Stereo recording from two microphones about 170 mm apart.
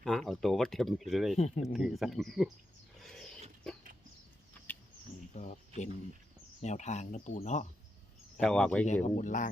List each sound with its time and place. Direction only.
0.0 s speech: centre (ahead or behind)
3.0 s a sound: 5° left (ahead or behind)
5.3 s speech: 45° left (ahead or behind)
8.4 s speech: 5° left (ahead or behind)
9.0 s speech: 45° left (ahead or behind)